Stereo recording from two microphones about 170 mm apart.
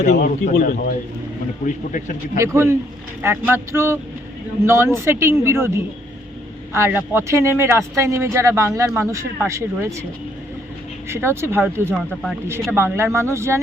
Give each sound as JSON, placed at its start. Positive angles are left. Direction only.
{"t": 0.0, "sound": "a man's voice", "side_deg": 45}
{"t": 1.6, "sound": "a man's voice", "side_deg": 50}
{"t": 2.4, "sound": "speech", "side_deg": -15}
{"t": 11.1, "sound": "speech", "side_deg": -15}
{"t": 11.9, "sound": "speech", "side_deg": 0}
{"t": 12.7, "sound": "speech", "side_deg": -15}